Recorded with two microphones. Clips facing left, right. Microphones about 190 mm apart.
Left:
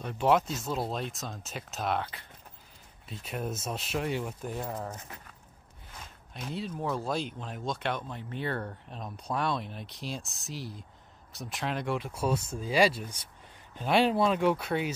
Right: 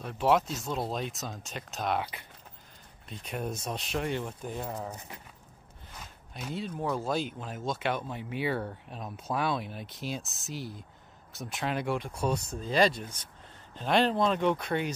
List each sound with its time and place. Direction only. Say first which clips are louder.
0.0 s speech: even; centre (ahead or behind)
3.1 s speech: even; centre (ahead or behind)
5.9 s speech: even; centre (ahead or behind)